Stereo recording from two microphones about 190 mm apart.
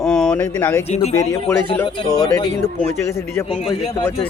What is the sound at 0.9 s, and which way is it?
Speech, 35° left (ahead or behind).